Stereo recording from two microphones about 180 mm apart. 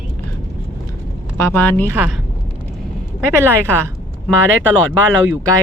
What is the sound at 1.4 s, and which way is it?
Speech, 10° left (ahead or behind).